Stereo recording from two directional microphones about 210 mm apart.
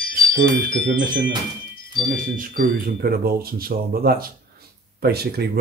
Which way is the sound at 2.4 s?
45° right (ahead or behind).